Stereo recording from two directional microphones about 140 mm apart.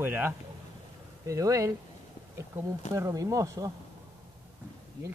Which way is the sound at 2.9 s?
25° right (ahead or behind).